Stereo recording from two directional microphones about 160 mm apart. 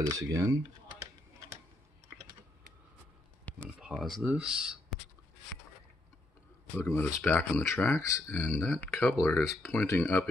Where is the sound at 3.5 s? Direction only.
10° left (ahead or behind).